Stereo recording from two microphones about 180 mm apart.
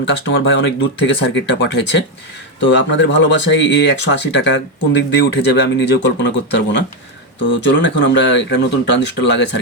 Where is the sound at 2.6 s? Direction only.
90° left.